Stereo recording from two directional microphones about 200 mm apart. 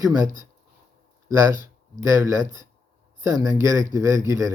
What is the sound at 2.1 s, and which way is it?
Speech, 15° right (ahead or behind).